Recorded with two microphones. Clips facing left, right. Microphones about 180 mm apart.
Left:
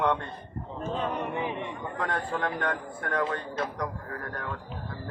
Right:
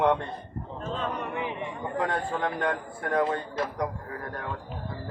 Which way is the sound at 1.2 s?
25° left (ahead or behind).